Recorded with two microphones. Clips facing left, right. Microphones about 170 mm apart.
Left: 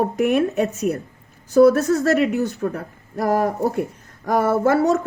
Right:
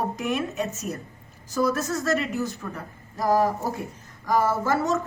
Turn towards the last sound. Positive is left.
turn(degrees=60)  # may be behind; listen again after turning